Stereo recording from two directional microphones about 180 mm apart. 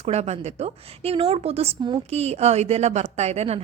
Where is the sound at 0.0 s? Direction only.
35° right (ahead or behind).